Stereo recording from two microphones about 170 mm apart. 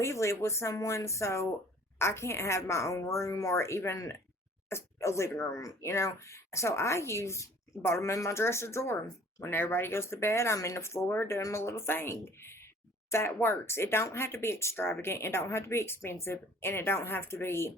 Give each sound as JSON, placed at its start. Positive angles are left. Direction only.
{"t": 0.0, "sound": "speech", "side_deg": 15}